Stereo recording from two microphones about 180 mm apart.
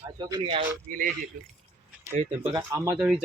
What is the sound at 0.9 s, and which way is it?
Speech, 45° right (ahead or behind).